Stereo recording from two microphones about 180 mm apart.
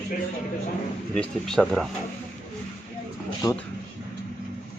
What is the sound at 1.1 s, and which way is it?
Speech, 5° left (ahead or behind).